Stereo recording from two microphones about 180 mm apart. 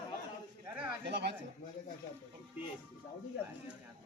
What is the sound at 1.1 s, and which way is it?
Speech, 65° right (ahead or behind).